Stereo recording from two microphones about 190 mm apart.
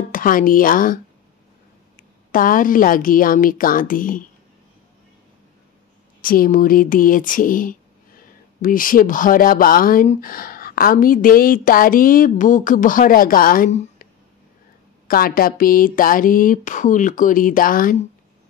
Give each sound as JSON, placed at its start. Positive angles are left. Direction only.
{"t": 0.1, "sound": "speech", "side_deg": 45}
{"t": 2.3, "sound": "speech", "side_deg": 45}
{"t": 6.2, "sound": "speech", "side_deg": 50}
{"t": 15.0, "sound": "speech", "side_deg": 50}